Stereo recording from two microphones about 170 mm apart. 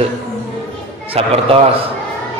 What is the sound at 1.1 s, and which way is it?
Speech, 35° right (ahead or behind).